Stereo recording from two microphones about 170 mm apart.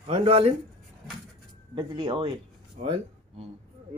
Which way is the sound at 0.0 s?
35° right (ahead or behind).